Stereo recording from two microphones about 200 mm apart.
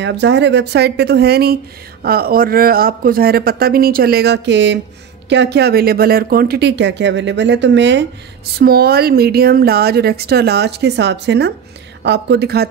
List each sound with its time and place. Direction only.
0.0 s speech: 60° right (ahead or behind)
8.5 s speech: 50° right (ahead or behind)